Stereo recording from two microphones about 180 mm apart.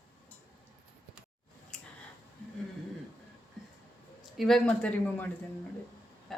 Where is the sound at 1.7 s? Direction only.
5° left (ahead or behind).